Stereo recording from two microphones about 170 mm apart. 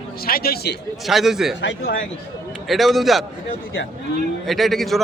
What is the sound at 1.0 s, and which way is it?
Speech, centre (ahead or behind).